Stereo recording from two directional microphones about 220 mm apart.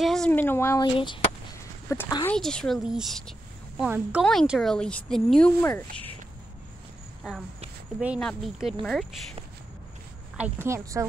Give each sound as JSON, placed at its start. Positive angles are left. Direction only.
{"t": 0.0, "sound": "speech", "side_deg": 0}
{"t": 0.9, "sound": "speech", "side_deg": 20}
{"t": 2.3, "sound": "a woman's voice", "side_deg": 5}
{"t": 8.0, "sound": "a woman's voice", "side_deg": -5}
{"t": 10.3, "sound": "a woman's voice", "side_deg": -10}